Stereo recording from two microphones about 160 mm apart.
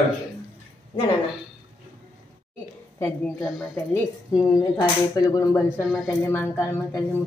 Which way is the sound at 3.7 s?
20° left (ahead or behind).